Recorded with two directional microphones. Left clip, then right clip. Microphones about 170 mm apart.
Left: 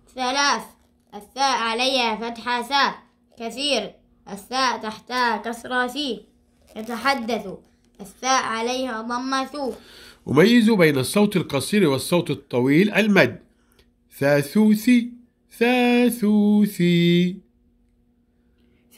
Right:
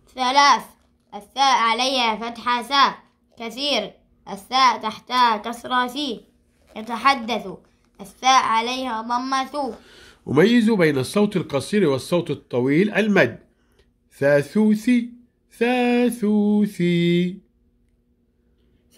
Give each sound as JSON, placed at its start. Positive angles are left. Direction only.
{"t": 0.1, "sound": "a child's voice", "side_deg": -45}
{"t": 9.8, "sound": "speech", "side_deg": 5}